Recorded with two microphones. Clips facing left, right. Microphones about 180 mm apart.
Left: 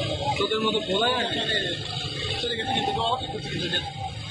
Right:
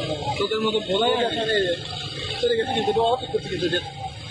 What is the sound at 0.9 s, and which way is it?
Speech, 20° right (ahead or behind).